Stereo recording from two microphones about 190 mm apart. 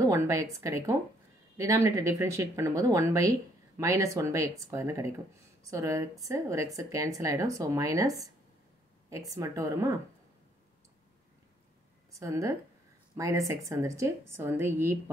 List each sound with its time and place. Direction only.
0.0 s speech: 15° right (ahead or behind)
9.1 s speech: 20° right (ahead or behind)
12.2 s speech: 15° right (ahead or behind)